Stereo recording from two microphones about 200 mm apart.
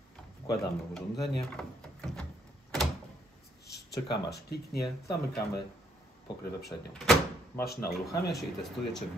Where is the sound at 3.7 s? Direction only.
55° left (ahead or behind).